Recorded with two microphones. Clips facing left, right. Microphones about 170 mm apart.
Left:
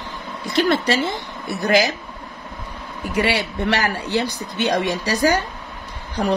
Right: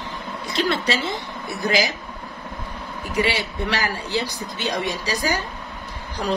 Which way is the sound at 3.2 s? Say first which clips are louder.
Left 2 dB; 65° left (ahead or behind).